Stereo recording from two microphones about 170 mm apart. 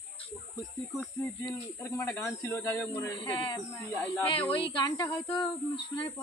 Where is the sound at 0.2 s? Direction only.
30° left (ahead or behind).